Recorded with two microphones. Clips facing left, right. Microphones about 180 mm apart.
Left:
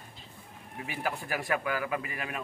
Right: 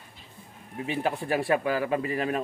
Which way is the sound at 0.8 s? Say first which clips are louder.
Right 7 dB; 25° right (ahead or behind).